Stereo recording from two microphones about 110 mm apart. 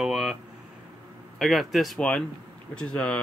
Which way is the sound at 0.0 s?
5° right (ahead or behind).